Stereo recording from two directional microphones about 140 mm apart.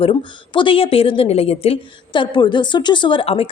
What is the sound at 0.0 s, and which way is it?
Speech, 40° left (ahead or behind).